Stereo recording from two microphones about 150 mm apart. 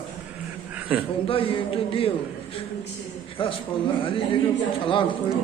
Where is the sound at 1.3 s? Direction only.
35° left (ahead or behind).